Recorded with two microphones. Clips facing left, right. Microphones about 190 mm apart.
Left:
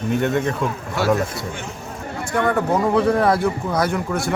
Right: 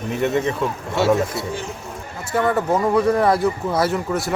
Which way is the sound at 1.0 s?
25° right (ahead or behind).